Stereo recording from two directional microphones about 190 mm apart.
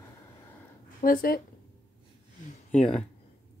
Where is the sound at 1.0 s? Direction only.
50° left (ahead or behind).